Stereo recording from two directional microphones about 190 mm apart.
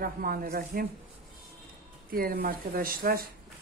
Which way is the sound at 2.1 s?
50° right (ahead or behind).